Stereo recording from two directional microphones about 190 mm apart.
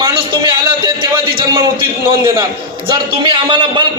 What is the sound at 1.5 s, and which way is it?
A man's voice, 25° right (ahead or behind).